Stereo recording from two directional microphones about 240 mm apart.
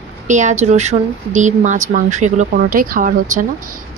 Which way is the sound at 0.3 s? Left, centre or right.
Right.